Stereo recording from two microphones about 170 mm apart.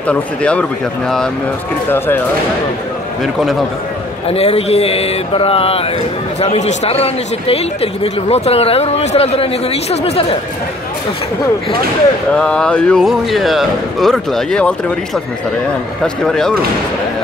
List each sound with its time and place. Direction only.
0.0 s speech: 5° left (ahead or behind)
4.3 s speech: 35° left (ahead or behind)
12.4 s speech: 5° left (ahead or behind)
16.0 s speech: 5° left (ahead or behind)